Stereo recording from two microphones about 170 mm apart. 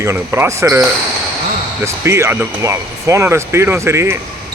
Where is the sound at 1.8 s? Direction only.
15° right (ahead or behind).